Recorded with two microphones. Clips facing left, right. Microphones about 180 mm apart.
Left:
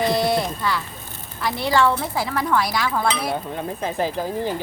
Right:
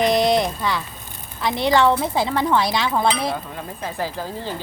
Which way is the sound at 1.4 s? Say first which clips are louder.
Right 2 dB; 20° right (ahead or behind).